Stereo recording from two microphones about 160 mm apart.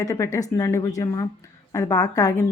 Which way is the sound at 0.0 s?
20° left (ahead or behind).